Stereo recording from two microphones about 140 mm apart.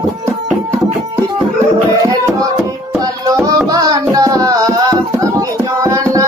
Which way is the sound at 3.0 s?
25° right (ahead or behind).